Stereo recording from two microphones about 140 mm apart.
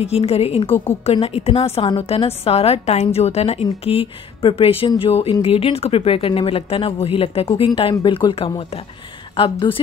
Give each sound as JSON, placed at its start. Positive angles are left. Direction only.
{"t": 0.0, "sound": "speech", "side_deg": 45}